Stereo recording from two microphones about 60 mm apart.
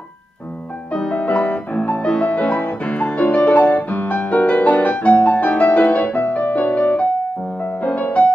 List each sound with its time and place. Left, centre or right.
0.9 s music: centre